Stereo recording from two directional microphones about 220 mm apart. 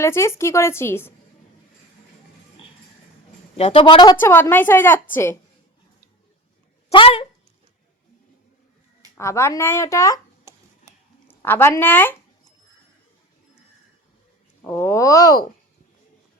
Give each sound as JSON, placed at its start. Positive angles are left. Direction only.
{"t": 0.0, "sound": "a woman's voice", "side_deg": 10}
{"t": 3.6, "sound": "a woman's voice", "side_deg": 25}
{"t": 6.9, "sound": "speech", "side_deg": 25}
{"t": 9.1, "sound": "a woman's voice", "side_deg": 10}
{"t": 10.5, "sound": "a sound", "side_deg": -10}
{"t": 11.3, "sound": "a sound", "side_deg": 10}
{"t": 14.6, "sound": "a woman's voice", "side_deg": 10}